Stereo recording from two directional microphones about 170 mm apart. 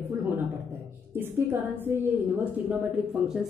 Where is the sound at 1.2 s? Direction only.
15° right (ahead or behind).